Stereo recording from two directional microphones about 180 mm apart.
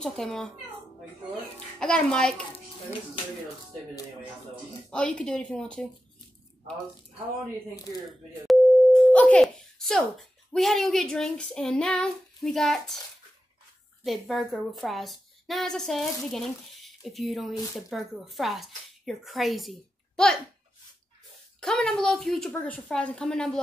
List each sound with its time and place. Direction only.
0.0 s a woman's voice: 5° left (ahead or behind)
1.8 s a woman's voice: 5° left (ahead or behind)
4.9 s a woman's voice: 5° left (ahead or behind)
7.7 s speech: 20° left (ahead or behind)
8.5 s a woman's voice: 5° left (ahead or behind)
14.0 s a woman's voice: centre (ahead or behind)
21.5 s a woman's voice: 5° left (ahead or behind)